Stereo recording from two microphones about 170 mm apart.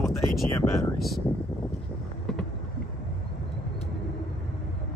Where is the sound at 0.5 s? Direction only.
20° left (ahead or behind).